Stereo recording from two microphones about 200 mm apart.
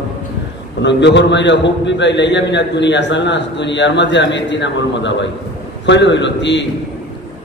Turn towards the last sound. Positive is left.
turn(degrees=60)  # may be behind; listen again after turning